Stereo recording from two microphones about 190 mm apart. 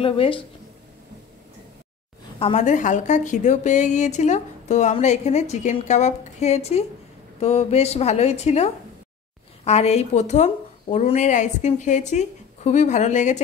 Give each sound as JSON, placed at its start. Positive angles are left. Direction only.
{"t": 0.0, "sound": "speech", "side_deg": 25}
{"t": 2.3, "sound": "a woman's voice", "side_deg": 35}